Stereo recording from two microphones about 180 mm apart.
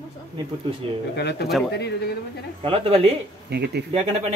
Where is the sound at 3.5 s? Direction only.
65° right (ahead or behind).